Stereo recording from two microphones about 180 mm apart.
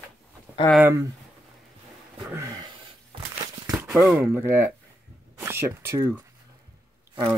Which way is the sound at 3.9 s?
5° right (ahead or behind).